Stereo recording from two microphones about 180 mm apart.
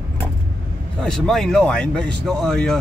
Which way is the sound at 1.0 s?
5° left (ahead or behind).